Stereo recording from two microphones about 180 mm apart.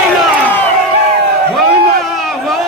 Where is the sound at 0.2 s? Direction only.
10° left (ahead or behind).